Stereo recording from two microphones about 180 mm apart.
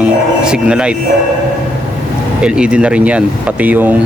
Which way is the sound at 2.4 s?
5° right (ahead or behind).